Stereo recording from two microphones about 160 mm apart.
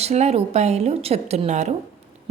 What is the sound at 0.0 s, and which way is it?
A woman's voice, 45° right (ahead or behind).